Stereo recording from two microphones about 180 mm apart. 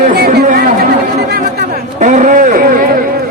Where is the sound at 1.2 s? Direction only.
65° right (ahead or behind).